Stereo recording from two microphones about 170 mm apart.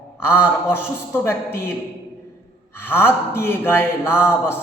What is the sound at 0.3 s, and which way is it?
A man's voice, 10° left (ahead or behind).